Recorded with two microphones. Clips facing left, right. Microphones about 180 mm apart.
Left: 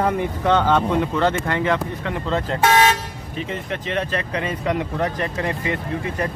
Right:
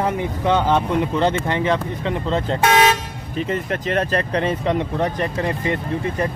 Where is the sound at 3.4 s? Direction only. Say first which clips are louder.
Right 5 dB; 45° right (ahead or behind); by 5.1 s 25° right (ahead or behind).